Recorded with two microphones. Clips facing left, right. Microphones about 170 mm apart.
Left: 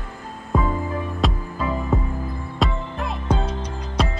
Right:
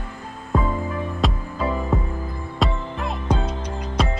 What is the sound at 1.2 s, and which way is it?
Music, centre (ahead or behind).